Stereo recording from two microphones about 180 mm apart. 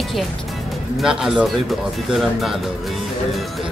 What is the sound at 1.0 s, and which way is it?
Speech, centre (ahead or behind).